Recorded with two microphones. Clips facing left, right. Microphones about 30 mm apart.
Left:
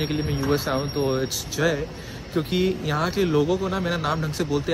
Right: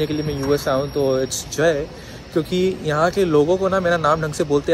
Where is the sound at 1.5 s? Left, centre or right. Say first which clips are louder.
Right 6 dB; centre.